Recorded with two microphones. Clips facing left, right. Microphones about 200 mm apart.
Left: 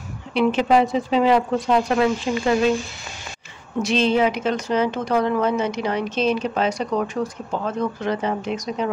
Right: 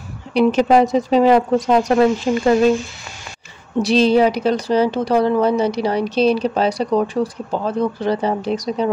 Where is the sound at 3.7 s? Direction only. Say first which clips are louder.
Right 5 dB; 35° right (ahead or behind).